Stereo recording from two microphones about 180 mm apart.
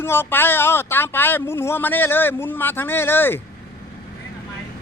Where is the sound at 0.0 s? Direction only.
10° left (ahead or behind).